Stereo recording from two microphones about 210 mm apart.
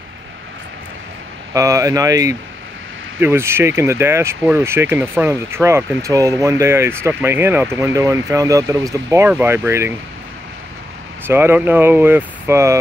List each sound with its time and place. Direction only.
1.5 s speech: 15° right (ahead or behind)
11.2 s speech: 10° right (ahead or behind)